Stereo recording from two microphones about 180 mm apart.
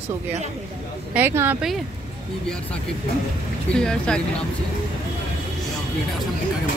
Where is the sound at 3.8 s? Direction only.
5° left (ahead or behind).